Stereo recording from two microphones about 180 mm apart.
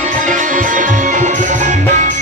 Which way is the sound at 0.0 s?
45° right (ahead or behind).